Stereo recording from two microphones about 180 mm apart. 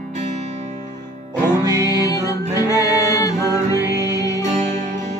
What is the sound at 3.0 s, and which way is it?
Music, 20° left (ahead or behind).